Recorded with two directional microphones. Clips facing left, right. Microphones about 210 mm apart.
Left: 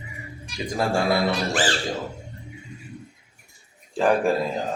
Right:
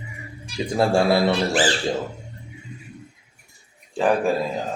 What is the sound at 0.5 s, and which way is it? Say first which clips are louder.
Speech: right 5 dB; 30° right (ahead or behind).